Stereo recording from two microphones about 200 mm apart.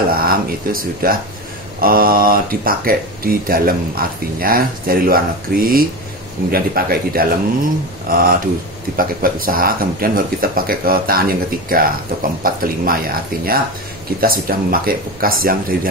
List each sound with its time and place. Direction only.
0.1 s speech: 45° right (ahead or behind)